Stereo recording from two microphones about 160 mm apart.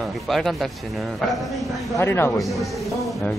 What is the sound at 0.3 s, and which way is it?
A man's voice, centre (ahead or behind).